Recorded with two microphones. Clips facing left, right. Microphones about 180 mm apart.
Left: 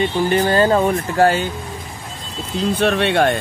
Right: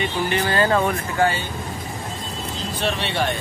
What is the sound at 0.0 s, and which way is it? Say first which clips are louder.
Speech: left 6 dB; 35° left (ahead or behind).